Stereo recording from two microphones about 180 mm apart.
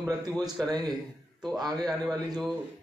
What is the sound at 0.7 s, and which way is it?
Speech, 20° right (ahead or behind).